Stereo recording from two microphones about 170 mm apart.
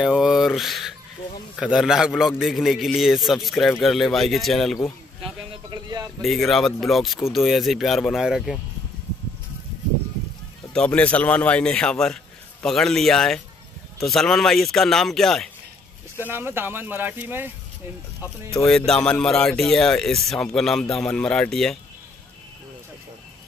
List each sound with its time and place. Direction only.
0.0 s a sound: 5° right (ahead or behind)
1.6 s speech: 5° right (ahead or behind)
5.2 s a sound: 25° right (ahead or behind)
6.2 s speech: centre (ahead or behind)
10.7 s a man's voice: 5° left (ahead or behind)
16.2 s speech: 10° right (ahead or behind)
18.7 s speech: 5° left (ahead or behind)